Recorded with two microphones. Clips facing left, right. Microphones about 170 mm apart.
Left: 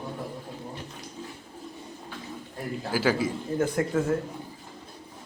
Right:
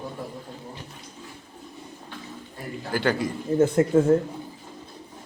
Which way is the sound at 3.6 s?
25° right (ahead or behind).